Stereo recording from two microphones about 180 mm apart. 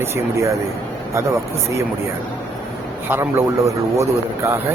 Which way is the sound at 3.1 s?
15° right (ahead or behind).